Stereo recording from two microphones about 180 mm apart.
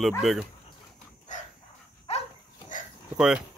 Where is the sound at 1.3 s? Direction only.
40° left (ahead or behind).